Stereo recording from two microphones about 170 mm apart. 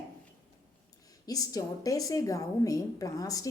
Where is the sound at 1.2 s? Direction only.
20° left (ahead or behind).